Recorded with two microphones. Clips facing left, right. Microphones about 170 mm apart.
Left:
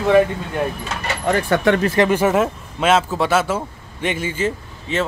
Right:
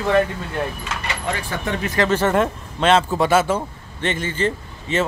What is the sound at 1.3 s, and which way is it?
Speech, 60° left (ahead or behind).